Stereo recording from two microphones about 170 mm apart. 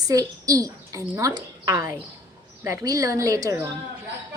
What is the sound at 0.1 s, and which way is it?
A woman's voice, 20° right (ahead or behind).